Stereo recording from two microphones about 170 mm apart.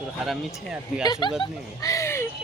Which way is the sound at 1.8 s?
20° left (ahead or behind).